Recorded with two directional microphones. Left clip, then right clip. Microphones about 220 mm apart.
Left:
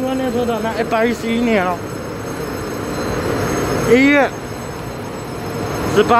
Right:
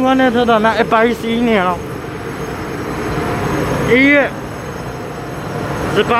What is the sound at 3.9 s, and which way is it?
Speech, 10° left (ahead or behind).